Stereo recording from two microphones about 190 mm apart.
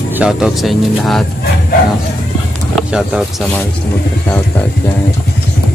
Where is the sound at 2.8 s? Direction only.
5° right (ahead or behind).